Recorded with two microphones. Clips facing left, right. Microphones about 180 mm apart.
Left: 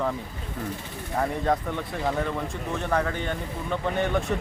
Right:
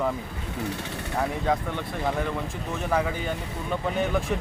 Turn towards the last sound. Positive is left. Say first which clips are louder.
# even
turn(degrees=0)  # may be behind; listen again after turning